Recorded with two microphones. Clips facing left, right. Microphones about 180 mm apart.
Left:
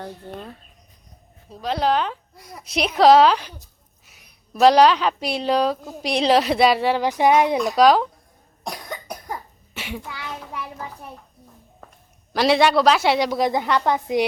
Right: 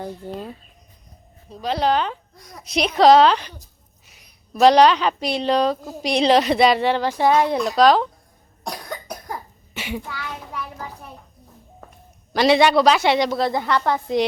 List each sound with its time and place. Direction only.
0.0 s a woman's voice: 5° right (ahead or behind)
7.1 s a woman's voice: 15° left (ahead or behind)
8.6 s cough: centre (ahead or behind)
10.1 s a sound: 20° left (ahead or behind)
12.3 s a woman's voice: centre (ahead or behind)